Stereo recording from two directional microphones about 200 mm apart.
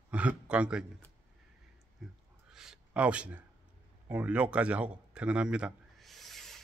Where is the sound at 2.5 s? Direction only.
5° right (ahead or behind).